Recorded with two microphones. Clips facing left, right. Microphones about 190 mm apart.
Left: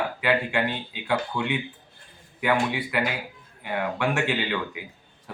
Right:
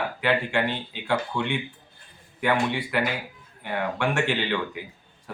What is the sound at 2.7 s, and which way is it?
Speech, 10° left (ahead or behind).